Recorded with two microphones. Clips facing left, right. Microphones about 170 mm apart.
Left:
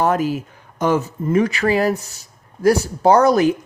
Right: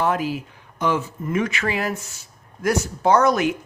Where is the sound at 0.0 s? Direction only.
45° left (ahead or behind).